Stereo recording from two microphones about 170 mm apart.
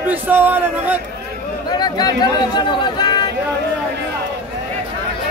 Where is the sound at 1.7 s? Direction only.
25° left (ahead or behind).